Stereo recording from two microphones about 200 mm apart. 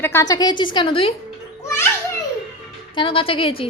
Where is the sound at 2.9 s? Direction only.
25° left (ahead or behind).